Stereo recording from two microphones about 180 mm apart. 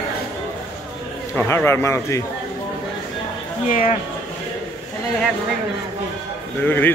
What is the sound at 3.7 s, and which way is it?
Speech, 45° left (ahead or behind).